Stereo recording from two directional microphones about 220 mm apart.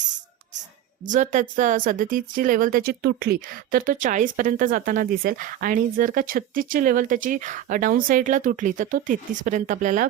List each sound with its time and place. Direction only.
1.0 s speech: 35° right (ahead or behind)